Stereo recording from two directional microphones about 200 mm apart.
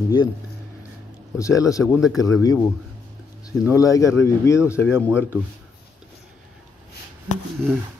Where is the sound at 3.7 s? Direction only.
15° left (ahead or behind).